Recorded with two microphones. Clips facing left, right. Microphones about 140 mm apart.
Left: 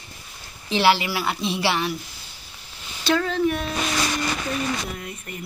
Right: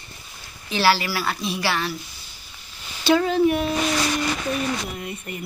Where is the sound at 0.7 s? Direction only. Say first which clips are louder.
Left 1 dB; 20° left (ahead or behind).